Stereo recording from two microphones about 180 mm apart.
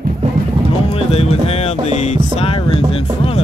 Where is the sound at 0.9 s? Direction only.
35° left (ahead or behind).